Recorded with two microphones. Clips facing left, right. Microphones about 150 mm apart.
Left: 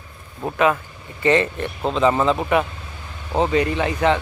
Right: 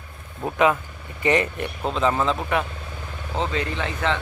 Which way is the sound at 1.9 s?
Centre (ahead or behind).